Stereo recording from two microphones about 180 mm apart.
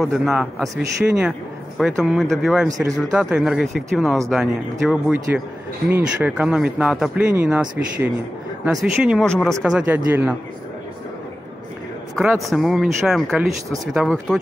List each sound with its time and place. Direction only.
0.0 s speech: centre (ahead or behind)
12.4 s speech: centre (ahead or behind)